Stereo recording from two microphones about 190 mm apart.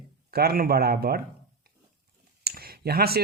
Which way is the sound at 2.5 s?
55° right (ahead or behind).